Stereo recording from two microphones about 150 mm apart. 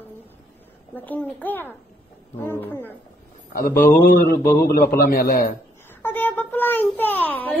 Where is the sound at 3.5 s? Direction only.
75° left (ahead or behind).